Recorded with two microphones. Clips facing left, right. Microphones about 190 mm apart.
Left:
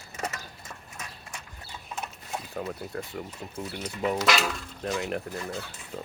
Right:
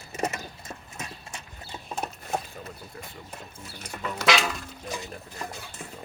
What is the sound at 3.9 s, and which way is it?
Speech, 50° right (ahead or behind).